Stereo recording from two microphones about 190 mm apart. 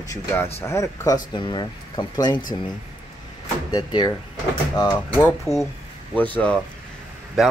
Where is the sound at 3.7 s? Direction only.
20° left (ahead or behind).